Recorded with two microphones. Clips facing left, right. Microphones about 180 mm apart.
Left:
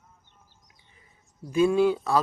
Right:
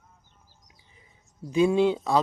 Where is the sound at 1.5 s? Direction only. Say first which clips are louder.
Even; 20° right (ahead or behind).